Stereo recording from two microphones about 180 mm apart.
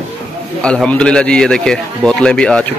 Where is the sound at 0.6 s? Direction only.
5° left (ahead or behind).